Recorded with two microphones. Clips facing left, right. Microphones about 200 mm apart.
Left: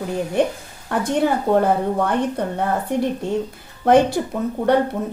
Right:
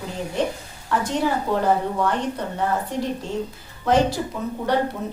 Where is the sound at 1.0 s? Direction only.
55° left (ahead or behind).